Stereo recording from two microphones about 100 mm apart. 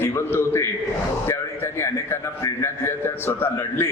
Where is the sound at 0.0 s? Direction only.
25° left (ahead or behind).